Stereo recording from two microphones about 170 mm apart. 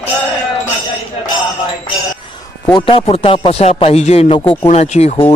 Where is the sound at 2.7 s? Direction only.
30° left (ahead or behind).